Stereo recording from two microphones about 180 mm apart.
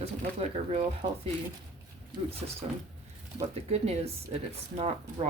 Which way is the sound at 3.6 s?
35° right (ahead or behind).